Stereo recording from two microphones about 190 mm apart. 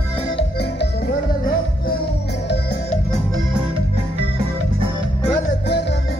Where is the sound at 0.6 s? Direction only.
60° left (ahead or behind).